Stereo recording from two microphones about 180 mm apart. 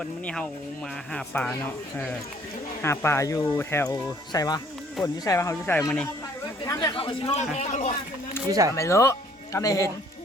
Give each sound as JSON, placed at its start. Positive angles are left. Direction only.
{"t": 0.0, "sound": "speech", "side_deg": 5}
{"t": 2.8, "sound": "speech", "side_deg": 15}
{"t": 6.7, "sound": "a man's voice", "side_deg": 20}
{"t": 8.4, "sound": "speech", "side_deg": -20}
{"t": 8.7, "sound": "speech", "side_deg": 15}